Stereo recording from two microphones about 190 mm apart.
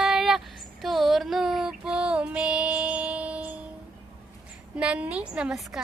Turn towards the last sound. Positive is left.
turn(degrees=-5)  # may be behind; listen again after turning